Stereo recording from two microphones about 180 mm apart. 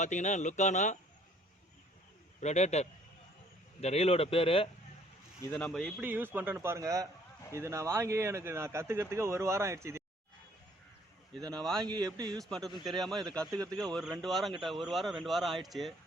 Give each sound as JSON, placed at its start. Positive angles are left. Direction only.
{"t": 0.0, "sound": "speech", "side_deg": 40}
{"t": 2.4, "sound": "speech", "side_deg": 40}
{"t": 5.4, "sound": "speech", "side_deg": 10}
{"t": 6.0, "sound": "speech", "side_deg": -10}
{"t": 11.5, "sound": "speech", "side_deg": 0}
{"t": 12.1, "sound": "speech", "side_deg": -20}
{"t": 12.4, "sound": "speech", "side_deg": 0}
{"t": 13.5, "sound": "speech", "side_deg": -20}
{"t": 13.8, "sound": "speech", "side_deg": 0}